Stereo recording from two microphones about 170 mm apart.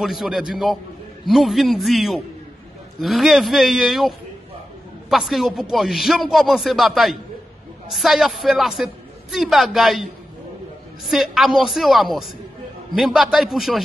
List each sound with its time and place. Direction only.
0.0 s a woman's voice: centre (ahead or behind)
5.1 s a woman's voice: centre (ahead or behind)
11.1 s a woman's voice: centre (ahead or behind)